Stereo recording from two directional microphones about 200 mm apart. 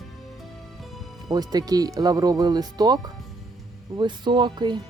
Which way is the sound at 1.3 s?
20° right (ahead or behind).